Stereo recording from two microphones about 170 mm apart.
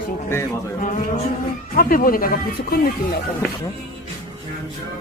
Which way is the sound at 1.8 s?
55° left (ahead or behind).